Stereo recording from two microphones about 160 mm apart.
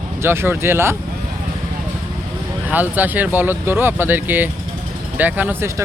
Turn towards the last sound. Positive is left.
turn(degrees=-15)  # may be behind; listen again after turning